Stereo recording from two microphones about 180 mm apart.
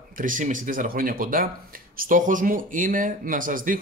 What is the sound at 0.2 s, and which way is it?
Speech, 45° right (ahead or behind).